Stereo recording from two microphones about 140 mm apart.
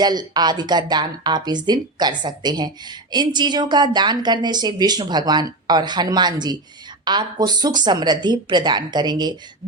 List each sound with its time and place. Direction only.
0.0 s a woman's voice: 30° right (ahead or behind)